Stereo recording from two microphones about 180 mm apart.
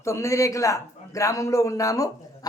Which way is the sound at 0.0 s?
15° left (ahead or behind).